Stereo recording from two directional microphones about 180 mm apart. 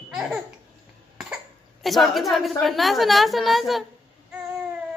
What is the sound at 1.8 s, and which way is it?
A woman's voice, centre (ahead or behind).